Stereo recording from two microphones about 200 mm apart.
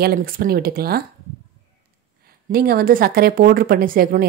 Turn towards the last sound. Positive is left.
turn(degrees=-45)  # may be behind; listen again after turning